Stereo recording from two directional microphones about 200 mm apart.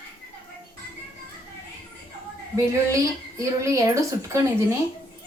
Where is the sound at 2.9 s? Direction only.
15° right (ahead or behind).